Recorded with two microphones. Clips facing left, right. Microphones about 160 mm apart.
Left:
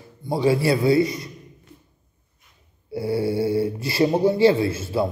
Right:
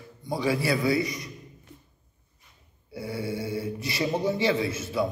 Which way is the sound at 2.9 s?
30° left (ahead or behind).